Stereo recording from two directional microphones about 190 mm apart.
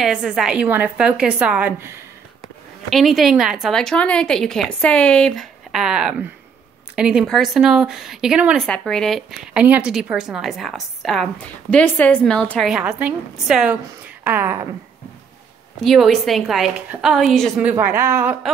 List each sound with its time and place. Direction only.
0.0 s a woman's voice: 5° right (ahead or behind)
2.9 s a woman's voice: centre (ahead or behind)
15.8 s a woman's voice: centre (ahead or behind)